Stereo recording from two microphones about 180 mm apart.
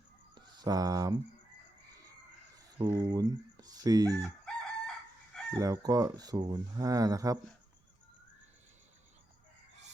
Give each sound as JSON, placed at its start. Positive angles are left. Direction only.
{"t": 0.3, "sound": "speech", "side_deg": -25}
{"t": 2.7, "sound": "speech", "side_deg": -10}
{"t": 3.0, "sound": "speech", "side_deg": -20}
{"t": 4.2, "sound": "chicken", "side_deg": 5}
{"t": 5.5, "sound": "speech", "side_deg": -20}